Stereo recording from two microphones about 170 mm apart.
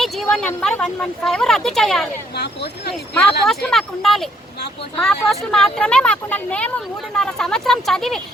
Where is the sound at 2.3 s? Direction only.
75° left (ahead or behind).